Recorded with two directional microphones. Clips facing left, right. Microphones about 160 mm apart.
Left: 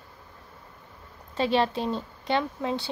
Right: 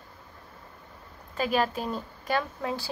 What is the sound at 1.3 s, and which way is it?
Speech, 30° left (ahead or behind).